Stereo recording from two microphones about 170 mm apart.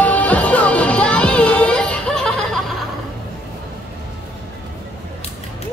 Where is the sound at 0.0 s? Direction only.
10° left (ahead or behind).